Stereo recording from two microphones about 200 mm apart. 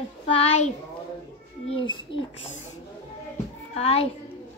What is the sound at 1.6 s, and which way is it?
Speech, 25° left (ahead or behind).